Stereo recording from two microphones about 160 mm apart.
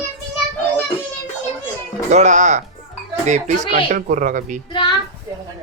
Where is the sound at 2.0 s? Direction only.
50° right (ahead or behind).